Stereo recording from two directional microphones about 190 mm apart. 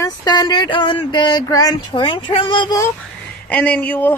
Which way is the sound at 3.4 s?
5° left (ahead or behind).